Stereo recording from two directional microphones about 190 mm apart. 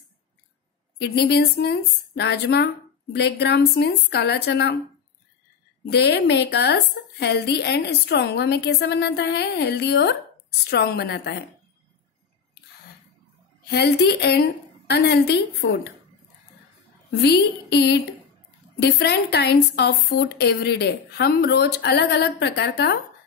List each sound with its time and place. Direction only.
0.9 s a woman's voice: 60° left (ahead or behind)
5.9 s a woman's voice: 60° left (ahead or behind)
13.7 s a woman's voice: 60° left (ahead or behind)
17.2 s a woman's voice: 60° left (ahead or behind)